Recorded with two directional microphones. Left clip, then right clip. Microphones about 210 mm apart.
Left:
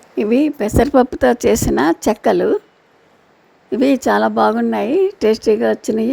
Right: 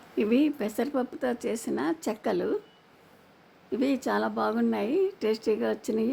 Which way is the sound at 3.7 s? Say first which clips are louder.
Left 13 dB; 35° left (ahead or behind).